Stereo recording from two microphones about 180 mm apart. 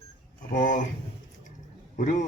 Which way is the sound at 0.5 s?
45° left (ahead or behind).